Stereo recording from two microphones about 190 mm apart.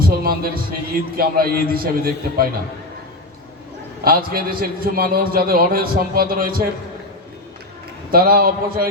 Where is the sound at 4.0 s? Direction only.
50° right (ahead or behind).